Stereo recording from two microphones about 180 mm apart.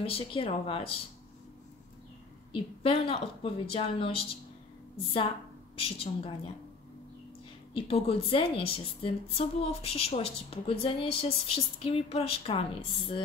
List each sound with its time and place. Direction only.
0.0 s a woman's voice: 30° left (ahead or behind)
2.5 s a woman's voice: 30° left (ahead or behind)
5.8 s a woman's voice: 30° left (ahead or behind)
7.7 s a woman's voice: 30° left (ahead or behind)